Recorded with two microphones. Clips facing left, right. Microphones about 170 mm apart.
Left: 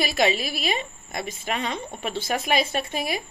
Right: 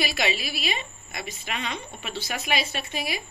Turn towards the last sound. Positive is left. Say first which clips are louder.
# left 4 dB
turn(degrees=45)  # may be behind; listen again after turning